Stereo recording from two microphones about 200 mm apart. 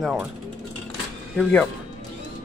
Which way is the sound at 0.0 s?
Centre (ahead or behind).